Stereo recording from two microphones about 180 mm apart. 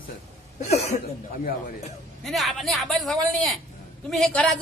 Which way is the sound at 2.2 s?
Centre (ahead or behind).